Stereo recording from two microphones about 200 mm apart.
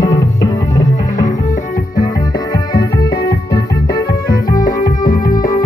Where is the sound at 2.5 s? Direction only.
20° left (ahead or behind).